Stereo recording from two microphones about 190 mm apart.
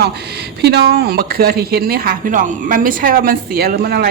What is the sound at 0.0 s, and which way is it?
Speech, 60° right (ahead or behind).